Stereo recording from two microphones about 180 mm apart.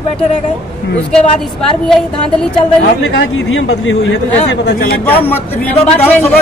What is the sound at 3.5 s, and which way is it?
Speech, 90° left.